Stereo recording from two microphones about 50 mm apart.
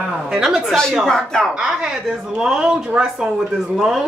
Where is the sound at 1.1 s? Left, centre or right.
Centre.